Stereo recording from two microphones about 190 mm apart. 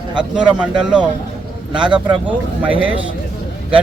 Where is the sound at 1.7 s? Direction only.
25° right (ahead or behind).